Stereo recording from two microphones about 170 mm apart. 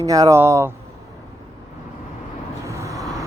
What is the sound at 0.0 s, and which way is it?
Speech, 20° right (ahead or behind).